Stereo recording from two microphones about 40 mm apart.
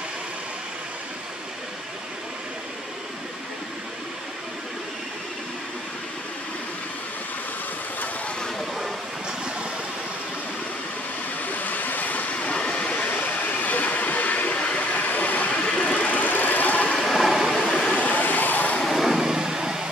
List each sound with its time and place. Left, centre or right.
8.4 s a sound: centre
11.5 s vehicle: left
12.4 s train: left
13.3 s train: left
17.1 s a sound: centre
17.9 s vehicle: left
18.9 s vehicle: centre